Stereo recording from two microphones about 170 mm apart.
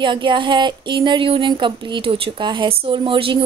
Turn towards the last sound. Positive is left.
turn(degrees=-30)  # may be behind; listen again after turning